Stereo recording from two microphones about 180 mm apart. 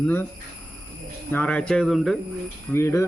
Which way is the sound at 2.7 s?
15° left (ahead or behind).